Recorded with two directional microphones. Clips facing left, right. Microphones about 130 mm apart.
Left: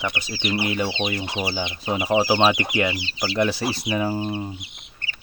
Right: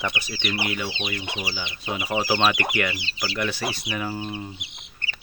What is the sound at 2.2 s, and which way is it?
Speech, 20° left (ahead or behind).